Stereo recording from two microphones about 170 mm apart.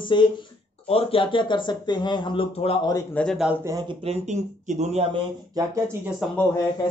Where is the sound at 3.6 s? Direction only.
20° right (ahead or behind).